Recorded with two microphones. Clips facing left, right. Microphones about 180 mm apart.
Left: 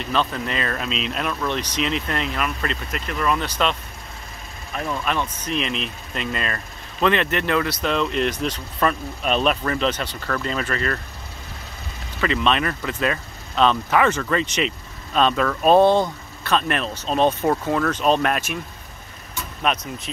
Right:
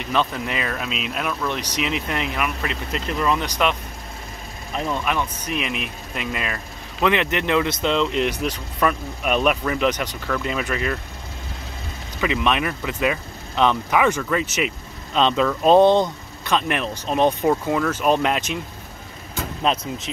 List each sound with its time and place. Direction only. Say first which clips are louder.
0.0 s speech: even; 15° right (ahead or behind)
2.9 s speech: right 2 dB; 25° right (ahead or behind)
4.7 s speech: right 1 dB; 20° right (ahead or behind)
12.2 s speech: even; 10° right (ahead or behind)
15.1 s speech: right 1 dB; 20° right (ahead or behind)
19.6 s speech: right 1 dB; 25° right (ahead or behind)